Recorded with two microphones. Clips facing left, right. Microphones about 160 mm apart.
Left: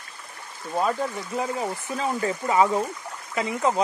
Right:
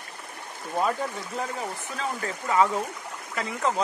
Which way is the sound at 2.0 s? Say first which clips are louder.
Left 5 dB; 15° left (ahead or behind).